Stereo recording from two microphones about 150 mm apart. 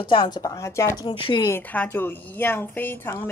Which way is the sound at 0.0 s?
35° left (ahead or behind).